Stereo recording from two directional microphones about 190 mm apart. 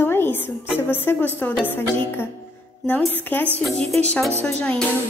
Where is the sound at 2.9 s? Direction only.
10° left (ahead or behind).